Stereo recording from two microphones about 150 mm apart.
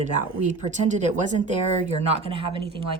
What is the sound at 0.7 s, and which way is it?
Speech, 50° right (ahead or behind).